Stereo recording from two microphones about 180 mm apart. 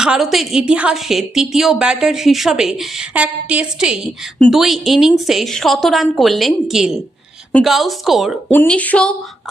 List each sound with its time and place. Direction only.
0.0 s a woman's voice: 5° right (ahead or behind)